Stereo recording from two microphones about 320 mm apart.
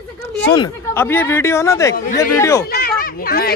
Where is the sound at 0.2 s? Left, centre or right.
Centre.